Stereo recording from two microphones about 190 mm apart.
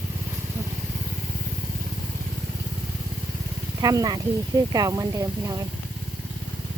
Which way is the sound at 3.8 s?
20° right (ahead or behind).